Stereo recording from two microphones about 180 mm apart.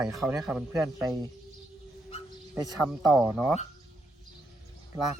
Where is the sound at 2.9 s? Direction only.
Centre (ahead or behind).